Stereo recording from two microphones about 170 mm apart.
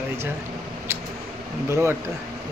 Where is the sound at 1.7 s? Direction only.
15° right (ahead or behind).